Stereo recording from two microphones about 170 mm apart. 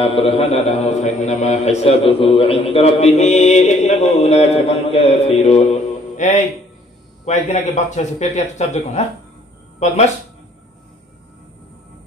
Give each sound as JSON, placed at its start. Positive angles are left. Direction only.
{"t": 0.0, "sound": "a man's voice", "side_deg": 35}